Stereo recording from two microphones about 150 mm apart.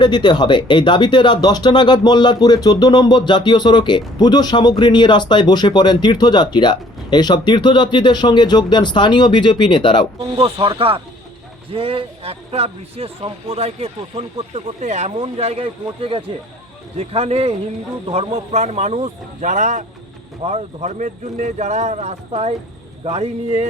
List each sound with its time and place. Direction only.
0.0 s speech: 30° left (ahead or behind)
10.3 s a man's voice: 40° right (ahead or behind)